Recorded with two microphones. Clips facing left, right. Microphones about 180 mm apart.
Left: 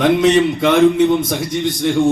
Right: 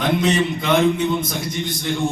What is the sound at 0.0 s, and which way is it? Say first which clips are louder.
A man's voice: left 7 dB; 80° left.